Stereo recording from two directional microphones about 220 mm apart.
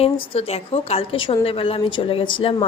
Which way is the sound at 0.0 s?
25° left (ahead or behind).